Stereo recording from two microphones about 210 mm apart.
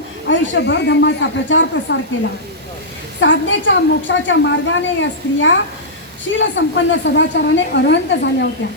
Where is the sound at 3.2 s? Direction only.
60° left (ahead or behind).